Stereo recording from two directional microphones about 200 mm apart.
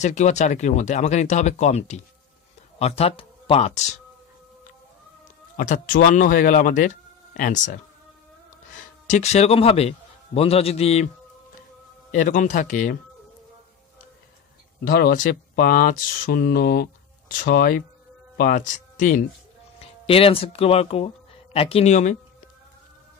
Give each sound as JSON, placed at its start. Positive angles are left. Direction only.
{"t": 0.0, "sound": "speech", "side_deg": 35}
{"t": 5.6, "sound": "speech", "side_deg": 45}
{"t": 9.0, "sound": "a man's voice", "side_deg": 35}
{"t": 12.1, "sound": "speech", "side_deg": 40}
{"t": 14.9, "sound": "speech", "side_deg": 50}
{"t": 20.1, "sound": "speech", "side_deg": 30}